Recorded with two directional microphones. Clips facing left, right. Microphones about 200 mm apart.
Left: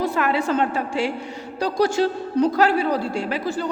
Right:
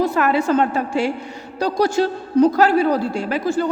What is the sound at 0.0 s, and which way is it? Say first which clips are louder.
Speech: right 4 dB; 40° right (ahead or behind).